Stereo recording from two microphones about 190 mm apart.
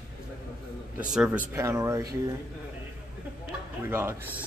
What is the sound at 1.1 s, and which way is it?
Speech, 5° right (ahead or behind).